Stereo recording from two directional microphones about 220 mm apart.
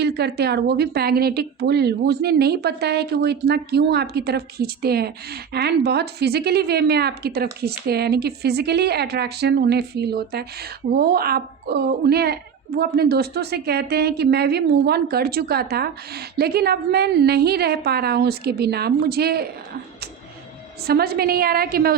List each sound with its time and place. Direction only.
0.0 s a woman's voice: 50° right (ahead or behind)
20.8 s a woman's voice: 45° right (ahead or behind)